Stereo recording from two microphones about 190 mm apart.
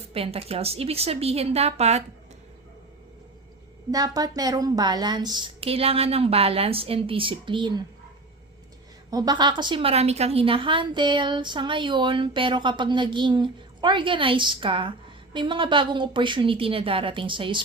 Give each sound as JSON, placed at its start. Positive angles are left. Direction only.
{"t": 0.1, "sound": "a woman's voice", "side_deg": -30}
{"t": 3.9, "sound": "a woman's voice", "side_deg": -20}
{"t": 9.0, "sound": "a woman's voice", "side_deg": -20}